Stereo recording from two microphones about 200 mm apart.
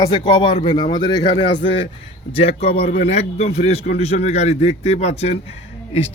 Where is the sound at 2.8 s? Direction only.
50° left (ahead or behind).